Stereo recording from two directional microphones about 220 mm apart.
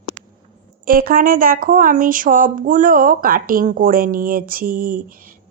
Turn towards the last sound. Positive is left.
turn(degrees=-40)  # may be behind; listen again after turning